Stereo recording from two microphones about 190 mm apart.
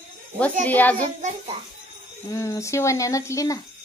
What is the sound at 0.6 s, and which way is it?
Speech, 10° left (ahead or behind).